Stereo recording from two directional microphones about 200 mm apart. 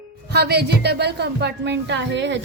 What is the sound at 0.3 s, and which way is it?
A woman's voice, 55° right (ahead or behind).